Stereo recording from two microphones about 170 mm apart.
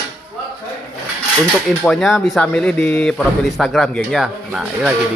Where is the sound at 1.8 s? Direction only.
5° left (ahead or behind).